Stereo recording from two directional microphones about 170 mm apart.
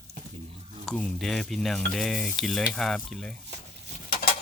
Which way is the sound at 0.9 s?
5° left (ahead or behind).